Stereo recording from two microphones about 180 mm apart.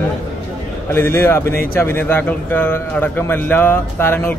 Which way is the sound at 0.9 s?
15° left (ahead or behind).